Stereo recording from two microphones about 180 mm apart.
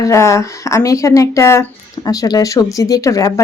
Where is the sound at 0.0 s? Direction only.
15° left (ahead or behind).